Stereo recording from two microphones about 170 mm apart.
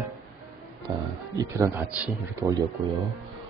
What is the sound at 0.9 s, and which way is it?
Speech, 25° right (ahead or behind).